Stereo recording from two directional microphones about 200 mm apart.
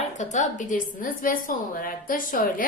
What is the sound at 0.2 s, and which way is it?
A woman's voice, 35° left (ahead or behind).